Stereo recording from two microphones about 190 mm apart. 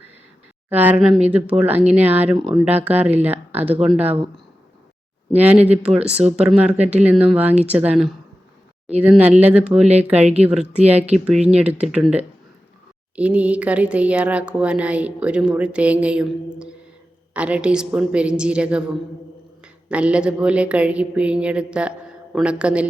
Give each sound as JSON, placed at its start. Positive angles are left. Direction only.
{"t": 0.7, "sound": "speech", "side_deg": -10}
{"t": 5.3, "sound": "a woman's voice", "side_deg": -10}
{"t": 10.2, "sound": "speech", "side_deg": -35}
{"t": 10.4, "sound": "a woman's voice", "side_deg": -5}